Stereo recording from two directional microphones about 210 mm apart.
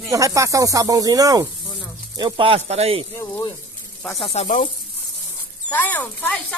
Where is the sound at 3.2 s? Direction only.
15° left (ahead or behind).